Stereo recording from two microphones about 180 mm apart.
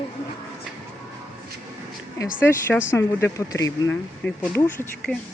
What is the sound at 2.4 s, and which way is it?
Speech, 10° left (ahead or behind).